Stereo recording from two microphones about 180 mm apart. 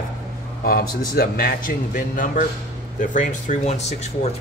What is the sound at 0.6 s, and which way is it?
Speech, 60° left (ahead or behind).